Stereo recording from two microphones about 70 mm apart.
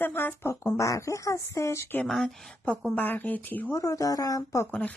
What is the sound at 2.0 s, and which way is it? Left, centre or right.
Speech, centre.